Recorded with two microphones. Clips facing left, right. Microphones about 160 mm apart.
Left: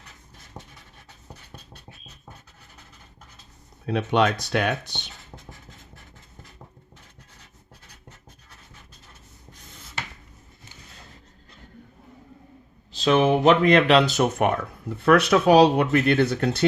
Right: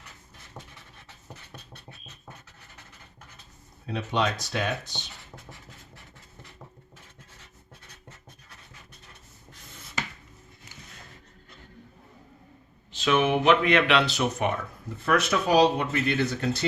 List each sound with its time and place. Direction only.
0.6 s a sound: 15° left (ahead or behind)
3.8 s speech: 65° left (ahead or behind)
12.9 s speech: 35° left (ahead or behind); by 16.6 s 60° left (ahead or behind)